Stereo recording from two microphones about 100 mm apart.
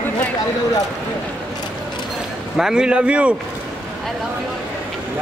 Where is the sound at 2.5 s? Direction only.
5° right (ahead or behind).